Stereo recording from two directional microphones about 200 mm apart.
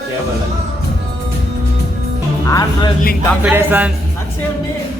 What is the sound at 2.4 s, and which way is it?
Music, 15° left (ahead or behind).